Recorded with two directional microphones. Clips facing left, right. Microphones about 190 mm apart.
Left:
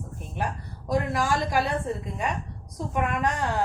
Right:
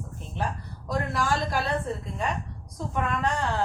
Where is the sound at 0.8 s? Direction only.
15° left (ahead or behind).